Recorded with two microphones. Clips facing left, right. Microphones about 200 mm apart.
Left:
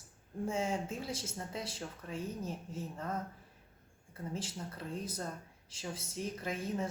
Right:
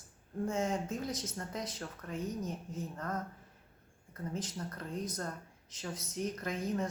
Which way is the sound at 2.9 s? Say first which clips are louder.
Even; 10° left (ahead or behind).